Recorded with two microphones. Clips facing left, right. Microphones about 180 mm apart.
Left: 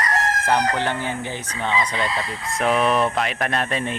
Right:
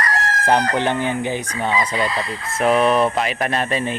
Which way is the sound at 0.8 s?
15° right (ahead or behind).